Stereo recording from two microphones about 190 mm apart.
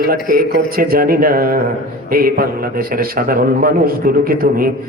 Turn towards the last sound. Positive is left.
turn(degrees=-50)  # may be behind; listen again after turning